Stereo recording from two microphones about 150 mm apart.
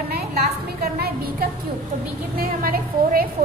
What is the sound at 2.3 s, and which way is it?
Speech, 80° right.